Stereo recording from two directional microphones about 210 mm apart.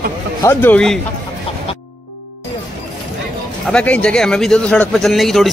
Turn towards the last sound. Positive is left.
turn(degrees=0)  # may be behind; listen again after turning